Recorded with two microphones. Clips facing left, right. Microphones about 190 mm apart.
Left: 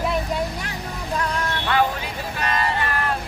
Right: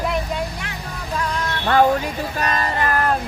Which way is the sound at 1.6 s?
45° right (ahead or behind).